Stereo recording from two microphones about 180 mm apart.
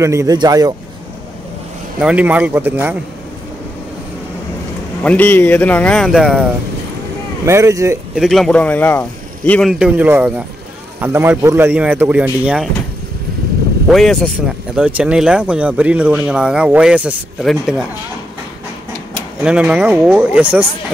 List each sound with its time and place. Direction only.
0.0 s speech: 15° right (ahead or behind)
2.0 s speech: 5° right (ahead or behind)
5.0 s speech: 10° left (ahead or behind)
6.0 s speech: 5° right (ahead or behind)
7.4 s speech: 15° right (ahead or behind)
8.2 s speech: centre (ahead or behind)
13.8 s speech: centre (ahead or behind)
19.4 s speech: 5° right (ahead or behind)